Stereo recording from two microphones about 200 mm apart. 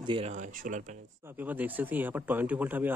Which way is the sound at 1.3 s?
10° right (ahead or behind).